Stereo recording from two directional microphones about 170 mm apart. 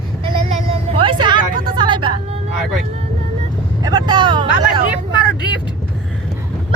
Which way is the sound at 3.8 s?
25° right (ahead or behind).